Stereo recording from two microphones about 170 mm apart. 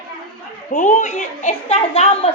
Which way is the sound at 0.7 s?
45° left (ahead or behind).